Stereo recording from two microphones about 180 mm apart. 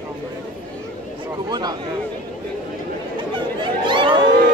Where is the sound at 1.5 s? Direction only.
20° right (ahead or behind).